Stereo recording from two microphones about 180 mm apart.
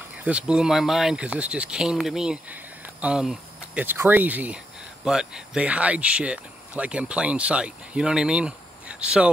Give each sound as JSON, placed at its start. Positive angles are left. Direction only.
{"t": 0.2, "sound": "speech", "side_deg": -5}